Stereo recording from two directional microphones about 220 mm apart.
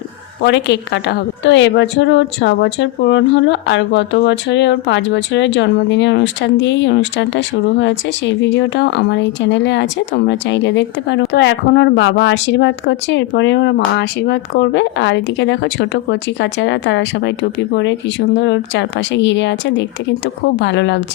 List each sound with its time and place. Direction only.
0.4 s a woman's voice: 50° left (ahead or behind)